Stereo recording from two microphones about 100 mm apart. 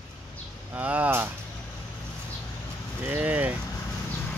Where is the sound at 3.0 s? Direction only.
15° right (ahead or behind).